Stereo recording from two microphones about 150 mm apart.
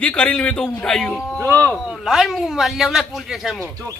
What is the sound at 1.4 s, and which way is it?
Speech, 20° right (ahead or behind).